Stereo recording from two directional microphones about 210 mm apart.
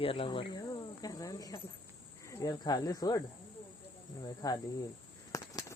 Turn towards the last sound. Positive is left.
turn(degrees=15)  # may be behind; listen again after turning